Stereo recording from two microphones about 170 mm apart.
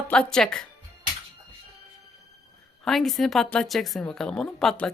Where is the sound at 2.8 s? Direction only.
Centre (ahead or behind).